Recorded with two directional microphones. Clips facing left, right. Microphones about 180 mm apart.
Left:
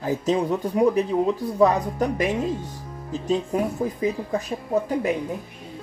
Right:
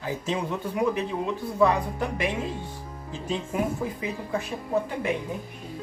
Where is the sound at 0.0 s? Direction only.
40° left (ahead or behind).